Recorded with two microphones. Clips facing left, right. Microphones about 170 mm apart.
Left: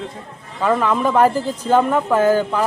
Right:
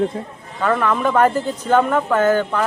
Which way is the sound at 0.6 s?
10° left (ahead or behind).